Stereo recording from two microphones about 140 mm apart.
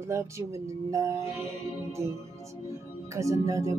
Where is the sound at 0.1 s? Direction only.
20° right (ahead or behind).